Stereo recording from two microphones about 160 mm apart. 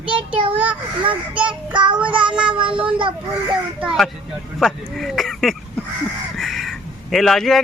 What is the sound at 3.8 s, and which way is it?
Speech, 5° right (ahead or behind).